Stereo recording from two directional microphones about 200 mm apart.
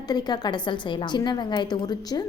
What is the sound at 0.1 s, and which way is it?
A woman's voice, 20° left (ahead or behind).